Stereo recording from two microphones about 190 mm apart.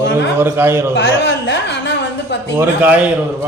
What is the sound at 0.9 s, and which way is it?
A woman's voice, 70° left (ahead or behind).